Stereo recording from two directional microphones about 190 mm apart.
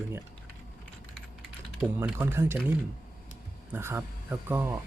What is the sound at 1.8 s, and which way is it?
Speech, 10° right (ahead or behind).